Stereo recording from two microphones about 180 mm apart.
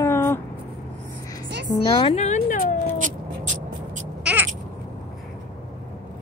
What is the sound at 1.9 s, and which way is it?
Speech, 35° left (ahead or behind).